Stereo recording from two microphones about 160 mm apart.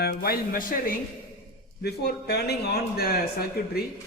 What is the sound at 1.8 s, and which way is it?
Speech, 90° left.